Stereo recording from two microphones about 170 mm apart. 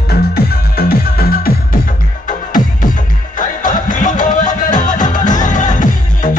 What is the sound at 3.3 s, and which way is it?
Music, 50° left (ahead or behind).